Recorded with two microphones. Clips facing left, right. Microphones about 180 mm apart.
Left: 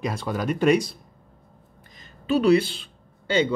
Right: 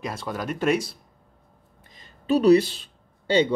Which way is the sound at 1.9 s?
35° right (ahead or behind).